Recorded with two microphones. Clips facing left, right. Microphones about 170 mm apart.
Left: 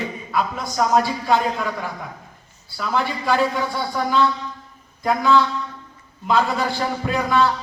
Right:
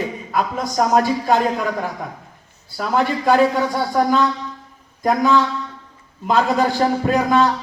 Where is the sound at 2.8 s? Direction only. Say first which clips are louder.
Right 4 dB; 45° right (ahead or behind).